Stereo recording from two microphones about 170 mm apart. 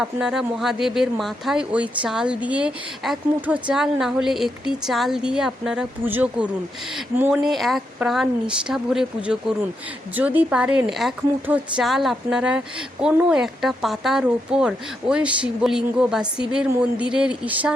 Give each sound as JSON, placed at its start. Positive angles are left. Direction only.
{"t": 0.0, "sound": "speech", "side_deg": -5}